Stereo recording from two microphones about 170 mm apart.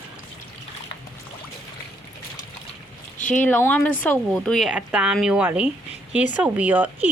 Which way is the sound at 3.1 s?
45° left (ahead or behind).